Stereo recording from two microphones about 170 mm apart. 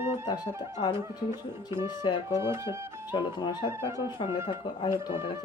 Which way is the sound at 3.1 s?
25° left (ahead or behind).